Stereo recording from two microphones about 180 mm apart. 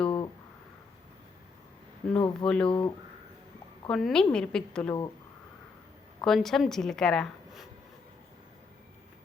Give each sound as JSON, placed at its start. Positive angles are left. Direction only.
{"t": 0.0, "sound": "a sound", "side_deg": 30}
{"t": 2.1, "sound": "speech", "side_deg": 30}
{"t": 3.8, "sound": "a woman's voice", "side_deg": 5}
{"t": 6.2, "sound": "a woman's voice", "side_deg": 0}